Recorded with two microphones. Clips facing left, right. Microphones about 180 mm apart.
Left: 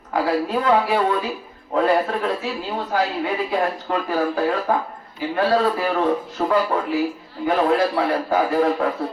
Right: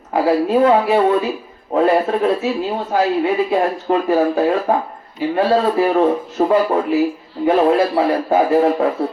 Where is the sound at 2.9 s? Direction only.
25° right (ahead or behind).